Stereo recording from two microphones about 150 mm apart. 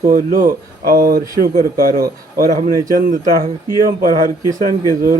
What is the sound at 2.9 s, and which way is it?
Speech, 70° right (ahead or behind).